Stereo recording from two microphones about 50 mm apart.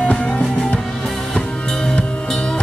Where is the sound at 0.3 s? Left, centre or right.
Centre.